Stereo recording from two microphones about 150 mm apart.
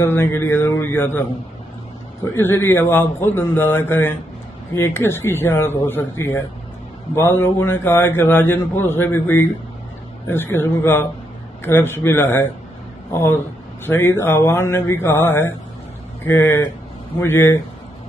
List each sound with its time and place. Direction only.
0.0 s a man's voice: 15° left (ahead or behind)
2.3 s a man's voice: 15° left (ahead or behind)